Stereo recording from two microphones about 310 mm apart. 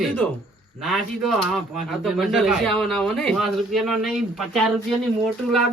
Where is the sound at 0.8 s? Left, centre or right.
Centre.